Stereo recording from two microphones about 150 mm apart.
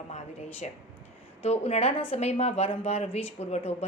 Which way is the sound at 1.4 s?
45° left (ahead or behind).